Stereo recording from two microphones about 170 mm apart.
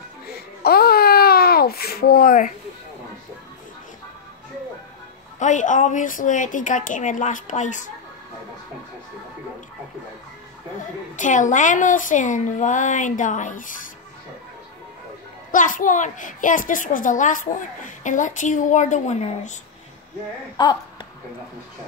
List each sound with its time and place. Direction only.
0.3 s a sound: 65° left (ahead or behind)
5.4 s a child's voice: 45° left (ahead or behind)
11.1 s a child's voice: 50° left (ahead or behind)
15.5 s a child's voice: 50° left (ahead or behind)
20.6 s speech: 25° left (ahead or behind)